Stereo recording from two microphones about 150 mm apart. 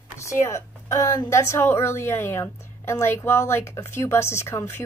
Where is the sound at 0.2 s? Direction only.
20° left (ahead or behind).